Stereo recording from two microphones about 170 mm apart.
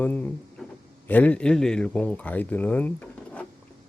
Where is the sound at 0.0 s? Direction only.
10° left (ahead or behind).